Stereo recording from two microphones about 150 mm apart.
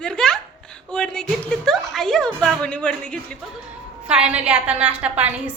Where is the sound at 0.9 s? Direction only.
5° left (ahead or behind).